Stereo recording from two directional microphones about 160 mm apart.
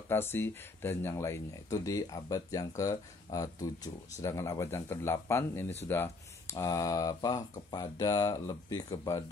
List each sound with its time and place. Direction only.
0.1 s speech: 15° left (ahead or behind)